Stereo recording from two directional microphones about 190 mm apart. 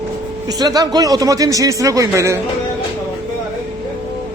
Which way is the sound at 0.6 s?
20° right (ahead or behind).